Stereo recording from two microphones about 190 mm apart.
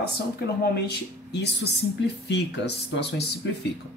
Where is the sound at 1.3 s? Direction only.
65° left (ahead or behind).